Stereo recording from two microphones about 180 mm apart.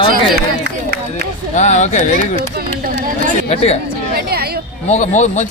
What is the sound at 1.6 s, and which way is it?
Speech, 40° left (ahead or behind).